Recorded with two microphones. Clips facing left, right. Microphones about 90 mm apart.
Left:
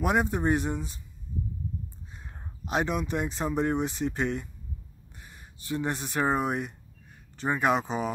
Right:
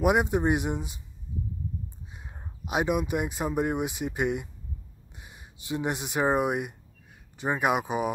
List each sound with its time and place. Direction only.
0.0 s speech: 15° right (ahead or behind)
1.3 s a sound: 10° right (ahead or behind)
2.6 s speech: 10° right (ahead or behind)